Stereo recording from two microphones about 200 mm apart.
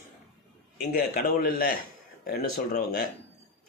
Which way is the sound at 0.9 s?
45° left (ahead or behind).